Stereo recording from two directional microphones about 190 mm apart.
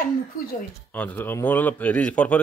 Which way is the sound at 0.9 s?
10° left (ahead or behind).